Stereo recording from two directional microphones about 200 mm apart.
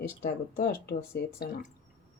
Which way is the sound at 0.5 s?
50° left (ahead or behind).